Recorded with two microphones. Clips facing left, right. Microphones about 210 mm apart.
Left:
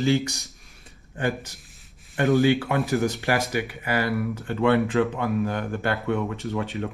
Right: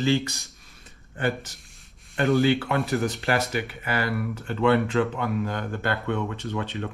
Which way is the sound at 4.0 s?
Centre (ahead or behind).